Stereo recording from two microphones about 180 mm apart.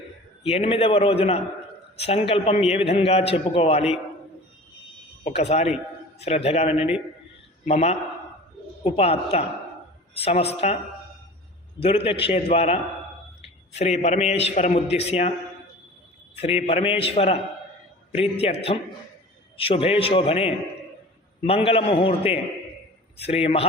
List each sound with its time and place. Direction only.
0.4 s a man's voice: 35° left (ahead or behind)
5.2 s a man's voice: 35° left (ahead or behind)
11.8 s a man's voice: 30° left (ahead or behind)
16.4 s a man's voice: 35° left (ahead or behind)
23.1 s a man's voice: 35° left (ahead or behind)